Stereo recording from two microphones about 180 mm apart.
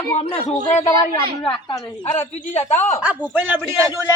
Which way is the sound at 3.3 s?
10° right (ahead or behind).